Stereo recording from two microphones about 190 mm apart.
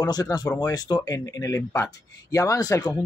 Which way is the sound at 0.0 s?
20° left (ahead or behind).